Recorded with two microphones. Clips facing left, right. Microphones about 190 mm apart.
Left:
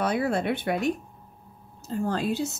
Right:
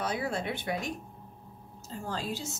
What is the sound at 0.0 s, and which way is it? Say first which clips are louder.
Speech: left 7 dB; 60° left (ahead or behind).